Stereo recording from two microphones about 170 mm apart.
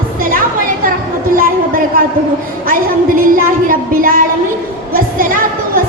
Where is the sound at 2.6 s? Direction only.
55° right (ahead or behind).